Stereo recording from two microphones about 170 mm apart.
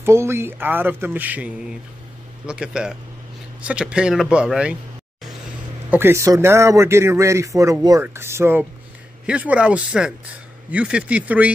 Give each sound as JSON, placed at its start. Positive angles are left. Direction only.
{"t": 0.0, "sound": "a man's voice", "side_deg": -15}
{"t": 5.9, "sound": "speech", "side_deg": -15}